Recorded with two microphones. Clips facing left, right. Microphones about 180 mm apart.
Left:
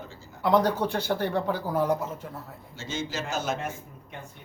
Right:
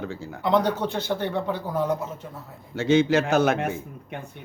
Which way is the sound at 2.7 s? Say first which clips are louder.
Right 14 dB; 65° right (ahead or behind).